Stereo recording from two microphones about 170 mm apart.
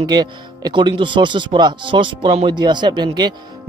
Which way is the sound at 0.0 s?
25° right (ahead or behind).